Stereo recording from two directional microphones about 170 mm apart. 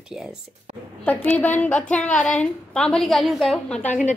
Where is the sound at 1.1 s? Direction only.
10° left (ahead or behind).